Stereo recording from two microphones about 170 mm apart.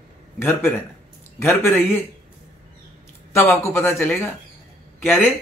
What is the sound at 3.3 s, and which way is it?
Speech, 15° left (ahead or behind).